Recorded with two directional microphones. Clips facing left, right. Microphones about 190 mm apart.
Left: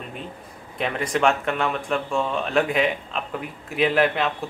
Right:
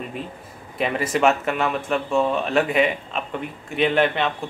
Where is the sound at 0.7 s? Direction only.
5° right (ahead or behind).